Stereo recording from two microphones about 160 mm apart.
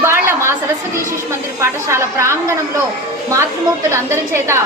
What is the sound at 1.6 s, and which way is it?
Speech, 15° right (ahead or behind).